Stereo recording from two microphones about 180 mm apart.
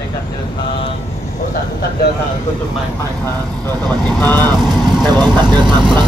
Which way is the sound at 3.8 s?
10° left (ahead or behind).